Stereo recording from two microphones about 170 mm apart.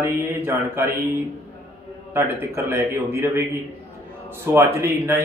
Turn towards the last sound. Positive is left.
turn(degrees=-15)  # may be behind; listen again after turning